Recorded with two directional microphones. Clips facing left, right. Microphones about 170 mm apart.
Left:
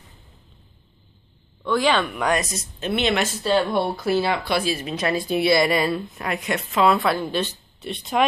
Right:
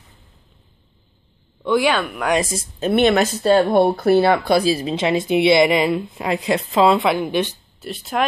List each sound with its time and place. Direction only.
1.6 s speech: 10° right (ahead or behind)
2.8 s speech: 50° right (ahead or behind)
4.6 s a woman's voice: 35° right (ahead or behind)
7.0 s speech: 15° right (ahead or behind)
7.8 s speech: centre (ahead or behind)